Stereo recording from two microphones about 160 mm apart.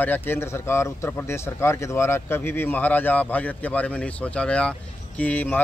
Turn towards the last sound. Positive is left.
turn(degrees=10)  # may be behind; listen again after turning